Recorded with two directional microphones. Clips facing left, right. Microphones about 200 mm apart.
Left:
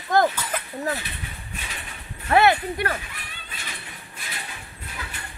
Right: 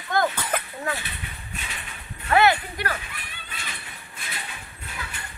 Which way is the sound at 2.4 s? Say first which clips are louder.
Left 2 dB; 30° left (ahead or behind).